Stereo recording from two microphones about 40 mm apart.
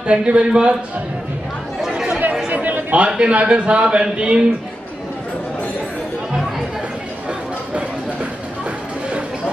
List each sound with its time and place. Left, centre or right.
0.0 s a man's voice: right
1.8 s chatter: centre
2.5 s a sound: right
3.2 s a man's voice: right